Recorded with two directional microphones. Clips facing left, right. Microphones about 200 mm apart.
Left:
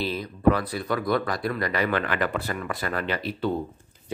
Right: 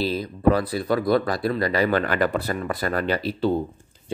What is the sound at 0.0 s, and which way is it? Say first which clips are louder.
Speech: right 2 dB; 35° right (ahead or behind).